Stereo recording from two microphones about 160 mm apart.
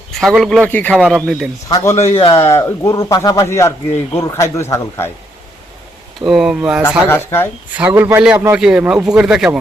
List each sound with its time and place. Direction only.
0.1 s a man's voice: centre (ahead or behind)
0.7 s speech: 10° left (ahead or behind)
0.9 s speech: 5° right (ahead or behind)
1.7 s speech: 15° left (ahead or behind)
2.0 s speech: 35° left (ahead or behind)
2.3 s speech: 20° left (ahead or behind)
6.2 s speech: 5° right (ahead or behind)
6.8 s speech: 15° left (ahead or behind)
7.8 s a man's voice: 15° right (ahead or behind)